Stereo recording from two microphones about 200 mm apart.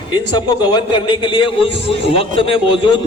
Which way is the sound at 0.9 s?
25° left (ahead or behind).